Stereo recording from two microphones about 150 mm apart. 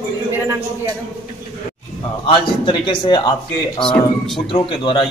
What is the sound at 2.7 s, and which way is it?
Speech, 35° left (ahead or behind).